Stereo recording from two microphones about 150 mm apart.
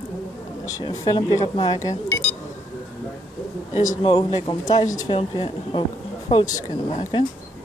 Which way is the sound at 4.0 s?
35° left (ahead or behind).